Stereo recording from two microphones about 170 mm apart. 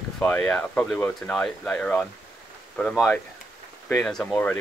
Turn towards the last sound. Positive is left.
turn(degrees=10)  # may be behind; listen again after turning